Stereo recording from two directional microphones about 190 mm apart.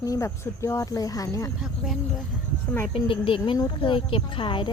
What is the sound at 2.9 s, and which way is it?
Speech, 25° left (ahead or behind).